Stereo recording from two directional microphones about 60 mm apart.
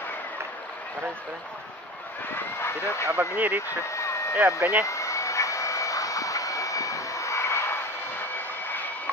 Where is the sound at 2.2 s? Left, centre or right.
Left.